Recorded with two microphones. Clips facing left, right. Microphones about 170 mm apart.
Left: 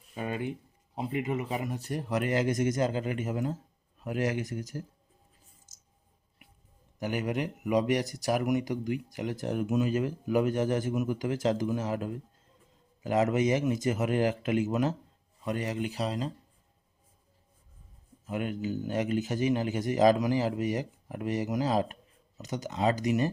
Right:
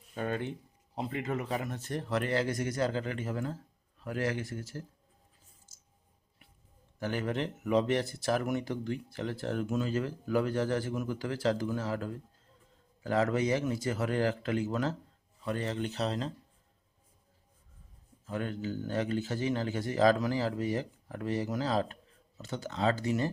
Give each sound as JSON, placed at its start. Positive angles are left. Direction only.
{"t": 0.1, "sound": "speech", "side_deg": 10}
{"t": 7.0, "sound": "speech", "side_deg": 15}
{"t": 18.3, "sound": "speech", "side_deg": 15}